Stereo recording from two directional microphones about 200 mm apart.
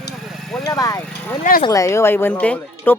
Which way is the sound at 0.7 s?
15° left (ahead or behind).